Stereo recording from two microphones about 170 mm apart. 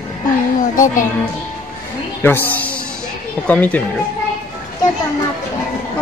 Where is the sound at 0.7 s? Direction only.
50° left (ahead or behind).